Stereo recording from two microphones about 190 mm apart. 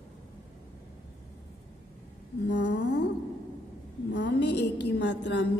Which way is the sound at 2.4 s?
65° left (ahead or behind).